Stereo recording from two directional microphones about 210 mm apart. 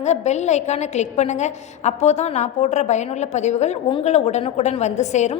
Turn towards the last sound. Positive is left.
turn(degrees=35)  # may be behind; listen again after turning